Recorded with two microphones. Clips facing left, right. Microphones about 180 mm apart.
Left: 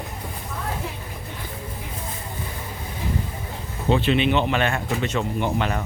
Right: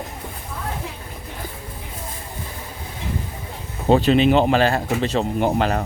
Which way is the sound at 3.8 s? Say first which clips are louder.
Right 5 dB; 40° right (ahead or behind).